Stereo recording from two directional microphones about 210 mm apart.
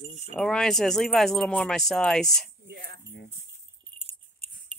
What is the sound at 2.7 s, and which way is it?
Speech, 50° right (ahead or behind).